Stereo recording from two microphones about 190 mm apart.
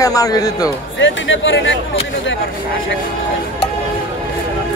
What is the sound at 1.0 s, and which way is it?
Speech, 85° left.